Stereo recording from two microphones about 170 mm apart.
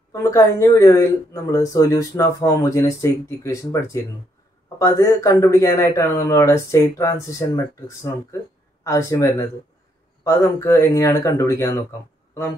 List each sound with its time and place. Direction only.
0.1 s speech: 15° left (ahead or behind)